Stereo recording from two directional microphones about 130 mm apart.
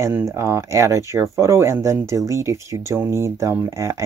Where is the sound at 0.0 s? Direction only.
20° right (ahead or behind).